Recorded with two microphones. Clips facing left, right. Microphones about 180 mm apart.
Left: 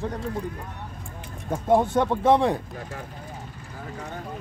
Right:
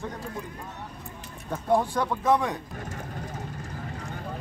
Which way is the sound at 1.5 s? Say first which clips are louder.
Left 4 dB; 20° left (ahead or behind).